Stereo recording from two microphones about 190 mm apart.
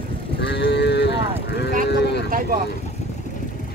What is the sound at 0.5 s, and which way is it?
Moo, 60° left (ahead or behind).